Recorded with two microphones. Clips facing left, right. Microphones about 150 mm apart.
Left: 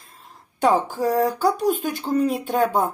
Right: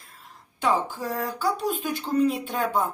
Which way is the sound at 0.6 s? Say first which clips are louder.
Left 6 dB; 40° left (ahead or behind).